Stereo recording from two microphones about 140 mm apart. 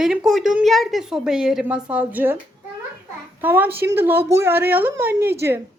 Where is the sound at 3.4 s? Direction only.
15° right (ahead or behind).